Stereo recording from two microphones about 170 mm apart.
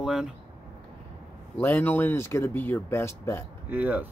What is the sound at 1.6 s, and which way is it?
Speech, 10° left (ahead or behind).